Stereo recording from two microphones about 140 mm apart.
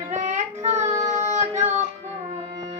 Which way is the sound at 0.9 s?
20° right (ahead or behind).